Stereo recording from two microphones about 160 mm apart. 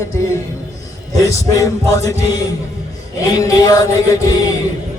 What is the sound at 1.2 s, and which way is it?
Music, 20° left (ahead or behind).